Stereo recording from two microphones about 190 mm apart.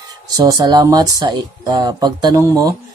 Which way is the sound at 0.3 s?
20° right (ahead or behind).